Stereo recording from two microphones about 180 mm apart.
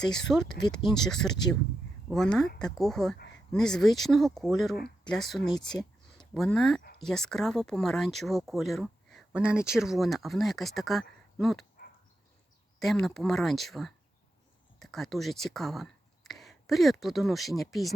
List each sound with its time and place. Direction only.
0.0 s speech: 5° left (ahead or behind)
3.2 s a sound: 80° left
3.5 s speech: 5° left (ahead or behind)
12.8 s speech: centre (ahead or behind)